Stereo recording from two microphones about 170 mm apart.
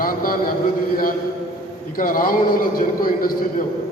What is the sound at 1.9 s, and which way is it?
A man's voice, 55° left (ahead or behind).